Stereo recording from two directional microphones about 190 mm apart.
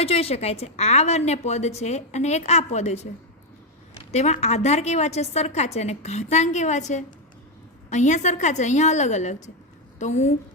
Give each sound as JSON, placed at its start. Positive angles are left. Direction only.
{"t": 0.0, "sound": "a woman's voice", "side_deg": 30}
{"t": 4.1, "sound": "a woman's voice", "side_deg": 35}